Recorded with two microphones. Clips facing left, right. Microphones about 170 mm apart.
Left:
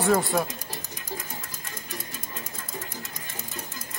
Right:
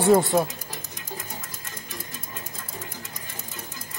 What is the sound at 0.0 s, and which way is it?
Speech, 25° right (ahead or behind).